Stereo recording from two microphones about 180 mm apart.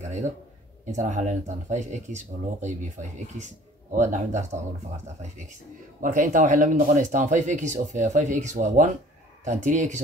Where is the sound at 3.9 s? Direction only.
40° right (ahead or behind).